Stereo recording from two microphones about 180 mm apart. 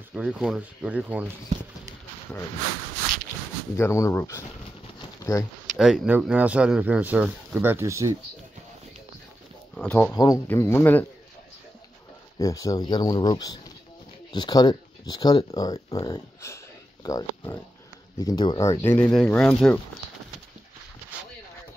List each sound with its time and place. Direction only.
0.1 s speech: 5° right (ahead or behind)
3.7 s speech: 15° left (ahead or behind)
4.9 s pigeon: 15° left (ahead or behind)
5.8 s speech: 5° right (ahead or behind)
9.8 s speech: 10° left (ahead or behind)
10.1 s speech: 20° left (ahead or behind)
12.4 s speech: 20° left (ahead or behind)